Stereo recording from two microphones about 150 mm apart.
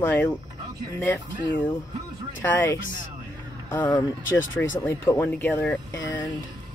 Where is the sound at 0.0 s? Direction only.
10° left (ahead or behind).